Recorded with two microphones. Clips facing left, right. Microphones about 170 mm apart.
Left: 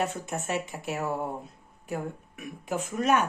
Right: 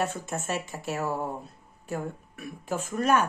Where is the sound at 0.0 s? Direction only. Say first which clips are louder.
Even; 20° left (ahead or behind).